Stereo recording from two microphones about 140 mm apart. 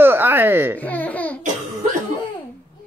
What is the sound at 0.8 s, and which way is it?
Speech, 10° left (ahead or behind).